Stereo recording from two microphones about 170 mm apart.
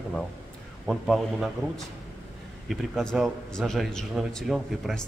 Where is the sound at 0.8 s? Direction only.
Centre (ahead or behind).